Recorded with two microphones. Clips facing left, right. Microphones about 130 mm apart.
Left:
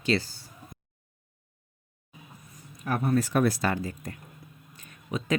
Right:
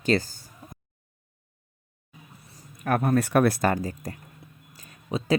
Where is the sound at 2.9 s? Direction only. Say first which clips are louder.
Right 3 dB; 60° right (ahead or behind).